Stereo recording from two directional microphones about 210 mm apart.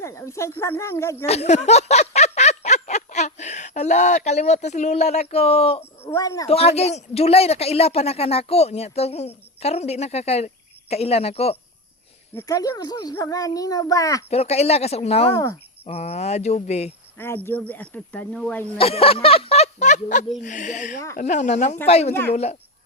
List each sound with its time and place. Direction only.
0.0 s a child's voice: 15° left (ahead or behind)
1.3 s a sound: 30° left (ahead or behind)
5.8 s a child's voice: 10° left (ahead or behind)
6.5 s speech: 30° left (ahead or behind)
12.3 s a child's voice: 15° left (ahead or behind)
14.3 s speech: 30° left (ahead or behind)
15.3 s a child's voice: 15° left (ahead or behind)
15.9 s speech: 30° left (ahead or behind)
17.2 s a child's voice: 10° left (ahead or behind)
18.8 s speech: 25° left (ahead or behind)